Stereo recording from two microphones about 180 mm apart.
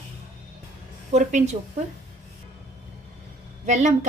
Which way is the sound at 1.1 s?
40° right (ahead or behind).